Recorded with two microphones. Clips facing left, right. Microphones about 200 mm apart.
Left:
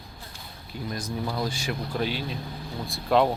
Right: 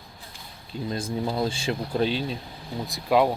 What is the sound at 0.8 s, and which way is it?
Speech, 25° right (ahead or behind).